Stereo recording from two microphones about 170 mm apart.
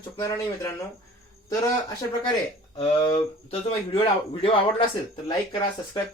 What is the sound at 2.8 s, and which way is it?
Speech, 30° left (ahead or behind).